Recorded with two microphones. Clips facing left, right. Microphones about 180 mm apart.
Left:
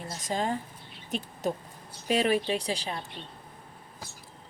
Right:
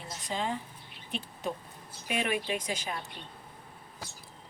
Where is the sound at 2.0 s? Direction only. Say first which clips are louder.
Left 6 dB; 35° left (ahead or behind).